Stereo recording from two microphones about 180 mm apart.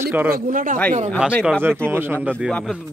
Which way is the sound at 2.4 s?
Centre (ahead or behind).